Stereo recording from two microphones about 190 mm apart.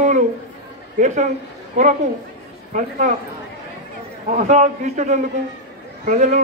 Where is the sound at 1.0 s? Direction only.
40° right (ahead or behind).